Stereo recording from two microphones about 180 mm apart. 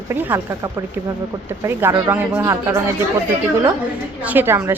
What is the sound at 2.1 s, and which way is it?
Speech, 10° right (ahead or behind).